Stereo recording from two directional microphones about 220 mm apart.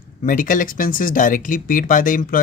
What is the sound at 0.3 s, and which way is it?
Speech, 35° left (ahead or behind).